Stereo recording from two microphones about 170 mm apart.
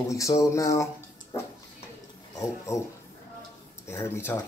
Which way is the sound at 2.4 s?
15° left (ahead or behind).